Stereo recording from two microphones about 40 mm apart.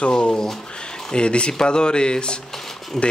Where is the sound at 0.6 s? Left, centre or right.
Left.